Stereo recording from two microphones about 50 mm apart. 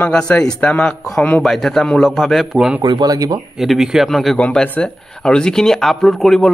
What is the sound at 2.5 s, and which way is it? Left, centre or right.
Speech, centre.